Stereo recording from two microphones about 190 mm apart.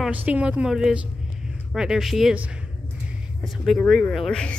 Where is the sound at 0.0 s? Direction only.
5° right (ahead or behind).